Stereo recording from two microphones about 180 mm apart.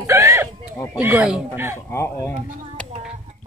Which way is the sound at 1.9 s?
15° left (ahead or behind).